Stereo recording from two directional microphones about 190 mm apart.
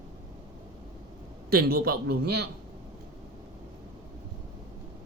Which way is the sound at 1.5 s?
50° right (ahead or behind).